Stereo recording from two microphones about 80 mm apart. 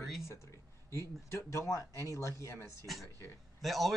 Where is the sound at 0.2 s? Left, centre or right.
Left.